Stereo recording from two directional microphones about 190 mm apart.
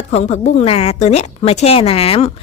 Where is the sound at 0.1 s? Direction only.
35° left (ahead or behind).